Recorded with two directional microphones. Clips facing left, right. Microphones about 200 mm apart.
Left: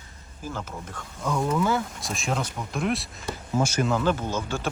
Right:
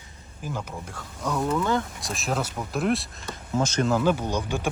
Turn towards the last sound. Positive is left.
turn(degrees=-15)  # may be behind; listen again after turning